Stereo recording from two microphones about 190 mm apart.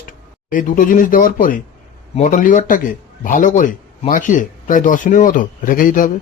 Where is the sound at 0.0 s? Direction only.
45° left (ahead or behind).